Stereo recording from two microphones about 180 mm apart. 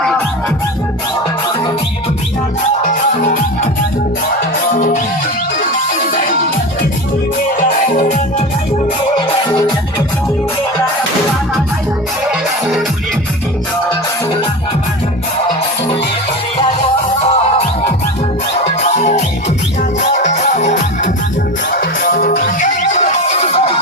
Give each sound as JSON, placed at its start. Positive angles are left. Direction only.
{"t": 2.8, "sound": "music", "side_deg": 45}
{"t": 4.7, "sound": "music", "side_deg": 50}
{"t": 7.6, "sound": "music", "side_deg": 45}
{"t": 9.1, "sound": "music", "side_deg": 25}
{"t": 17.2, "sound": "music", "side_deg": 35}